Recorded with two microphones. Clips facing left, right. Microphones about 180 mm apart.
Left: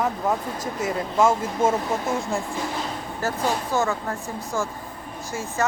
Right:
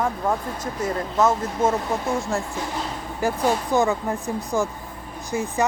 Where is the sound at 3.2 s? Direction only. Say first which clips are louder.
Right 4 dB; 15° right (ahead or behind).